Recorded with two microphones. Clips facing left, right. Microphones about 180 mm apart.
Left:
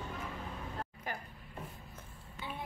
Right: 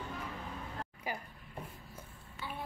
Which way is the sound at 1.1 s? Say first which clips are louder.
Right 3 dB; 10° right (ahead or behind).